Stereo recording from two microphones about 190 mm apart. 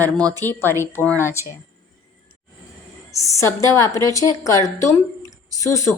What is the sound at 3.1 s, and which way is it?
A woman's voice, 15° left (ahead or behind).